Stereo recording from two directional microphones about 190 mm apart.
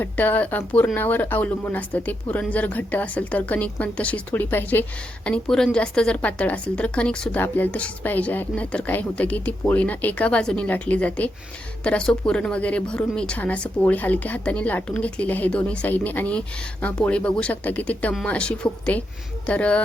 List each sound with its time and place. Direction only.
0.0 s speech: 10° left (ahead or behind)